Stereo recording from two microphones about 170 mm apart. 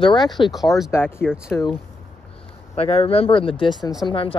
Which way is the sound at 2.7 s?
35° left (ahead or behind).